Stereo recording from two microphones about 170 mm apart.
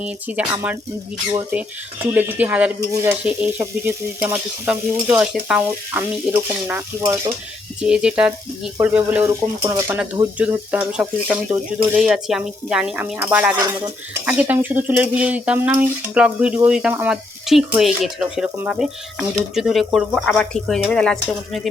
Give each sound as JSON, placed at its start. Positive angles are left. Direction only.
{"t": 0.0, "sound": "stir", "side_deg": -10}
{"t": 2.1, "sound": "stir", "side_deg": -10}
{"t": 7.8, "sound": "stir", "side_deg": -5}
{"t": 10.0, "sound": "stir", "side_deg": -10}
{"t": 11.9, "sound": "speech", "side_deg": -5}
{"t": 14.1, "sound": "stir", "side_deg": -10}
{"t": 16.6, "sound": "speech", "side_deg": -5}